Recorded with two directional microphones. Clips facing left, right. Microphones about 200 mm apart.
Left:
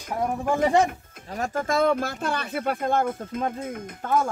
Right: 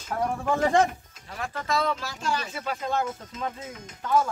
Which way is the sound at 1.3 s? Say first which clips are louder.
Left 4 dB; 45° left (ahead or behind).